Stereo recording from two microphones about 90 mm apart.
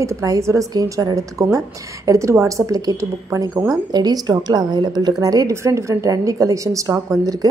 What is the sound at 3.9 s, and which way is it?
A woman's voice, 50° right (ahead or behind).